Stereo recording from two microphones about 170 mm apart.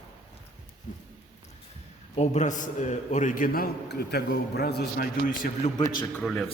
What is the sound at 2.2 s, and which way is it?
A man's voice, 45° left (ahead or behind).